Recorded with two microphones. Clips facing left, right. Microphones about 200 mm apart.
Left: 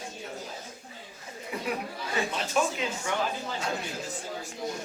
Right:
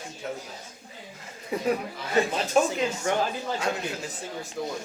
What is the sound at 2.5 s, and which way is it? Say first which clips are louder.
Speech: right 5 dB; 40° right (ahead or behind).